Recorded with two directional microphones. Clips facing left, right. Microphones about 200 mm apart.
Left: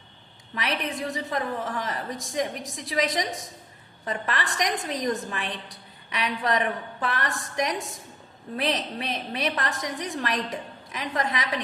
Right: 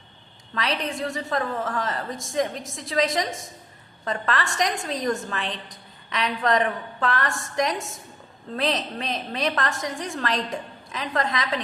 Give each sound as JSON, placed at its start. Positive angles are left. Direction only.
{"t": 0.5, "sound": "a woman's voice", "side_deg": 15}